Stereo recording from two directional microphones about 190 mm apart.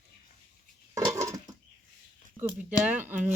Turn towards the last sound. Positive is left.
turn(degrees=-10)  # may be behind; listen again after turning